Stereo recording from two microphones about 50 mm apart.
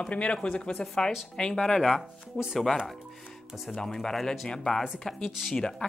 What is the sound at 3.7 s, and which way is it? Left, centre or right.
Speech, centre.